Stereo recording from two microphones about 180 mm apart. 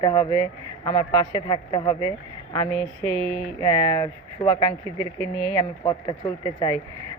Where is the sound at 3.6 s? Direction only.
20° left (ahead or behind).